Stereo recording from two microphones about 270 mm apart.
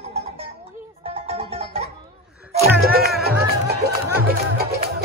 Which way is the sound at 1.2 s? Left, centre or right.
Right.